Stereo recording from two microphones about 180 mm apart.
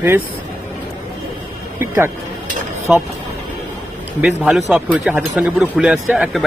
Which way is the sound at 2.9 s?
5° right (ahead or behind).